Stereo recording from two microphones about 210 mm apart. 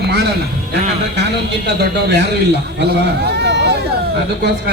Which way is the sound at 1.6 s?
50° right (ahead or behind).